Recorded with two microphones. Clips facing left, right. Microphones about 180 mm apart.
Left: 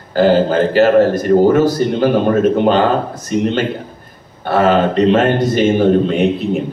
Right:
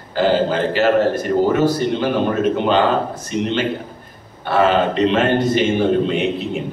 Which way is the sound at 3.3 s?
45° left (ahead or behind).